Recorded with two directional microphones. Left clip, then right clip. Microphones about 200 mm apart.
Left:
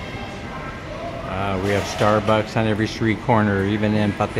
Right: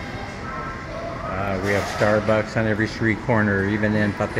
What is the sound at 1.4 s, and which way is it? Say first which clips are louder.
Speech: left 1 dB; 20° left (ahead or behind).